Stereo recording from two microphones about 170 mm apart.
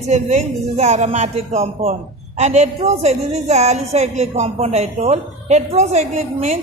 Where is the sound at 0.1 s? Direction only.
45° right (ahead or behind).